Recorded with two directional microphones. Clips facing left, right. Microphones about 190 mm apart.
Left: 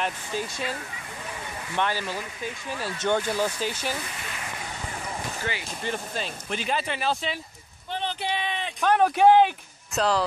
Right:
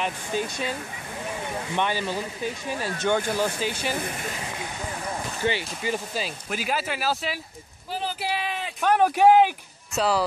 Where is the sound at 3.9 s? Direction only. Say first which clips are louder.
Right 4 dB; 50° right (ahead or behind).